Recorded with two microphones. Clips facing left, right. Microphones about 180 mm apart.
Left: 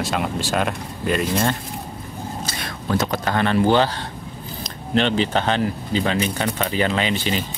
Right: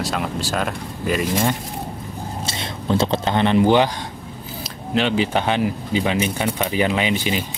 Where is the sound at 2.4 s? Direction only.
25° right (ahead or behind).